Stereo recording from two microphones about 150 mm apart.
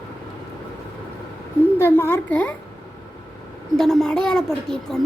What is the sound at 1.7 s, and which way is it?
Speech, 15° left (ahead or behind).